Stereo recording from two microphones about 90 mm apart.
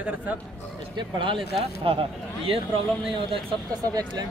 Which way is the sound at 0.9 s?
65° right (ahead or behind).